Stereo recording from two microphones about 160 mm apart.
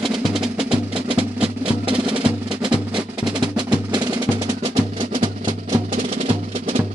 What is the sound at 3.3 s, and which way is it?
Music, 25° right (ahead or behind).